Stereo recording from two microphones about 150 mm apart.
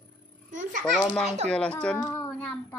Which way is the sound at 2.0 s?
20° left (ahead or behind).